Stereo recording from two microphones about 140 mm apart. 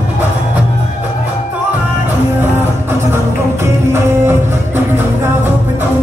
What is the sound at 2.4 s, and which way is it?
Music, 15° right (ahead or behind).